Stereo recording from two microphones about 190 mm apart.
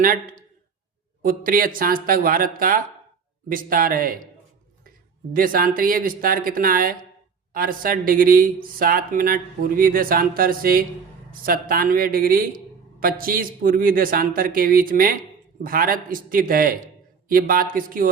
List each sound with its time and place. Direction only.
0.0 s a man's voice: 50° right (ahead or behind)
5.3 s a man's voice: 50° right (ahead or behind)